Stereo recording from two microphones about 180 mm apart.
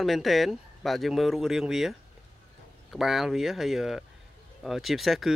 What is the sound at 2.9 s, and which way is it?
Speech, centre (ahead or behind).